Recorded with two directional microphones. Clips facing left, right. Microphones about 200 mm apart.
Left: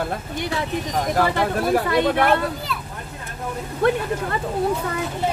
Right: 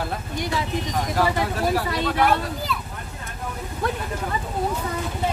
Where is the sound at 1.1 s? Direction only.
55° left (ahead or behind).